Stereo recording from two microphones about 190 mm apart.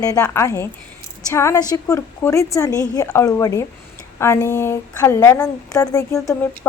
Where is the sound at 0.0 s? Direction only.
15° left (ahead or behind).